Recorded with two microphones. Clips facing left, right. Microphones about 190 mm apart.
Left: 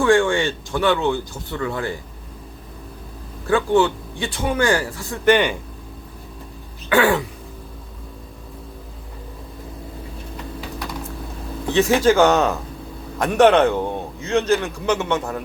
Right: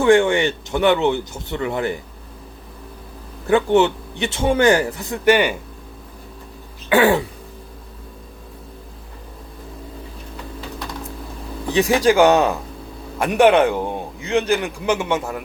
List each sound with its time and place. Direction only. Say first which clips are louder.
0.0 s speech: right 2 dB; 20° right (ahead or behind)
3.4 s speech: right 2 dB; 20° right (ahead or behind)
5.2 s a man's voice: even; 10° right (ahead or behind)
11.7 s a man's voice: even; 15° right (ahead or behind)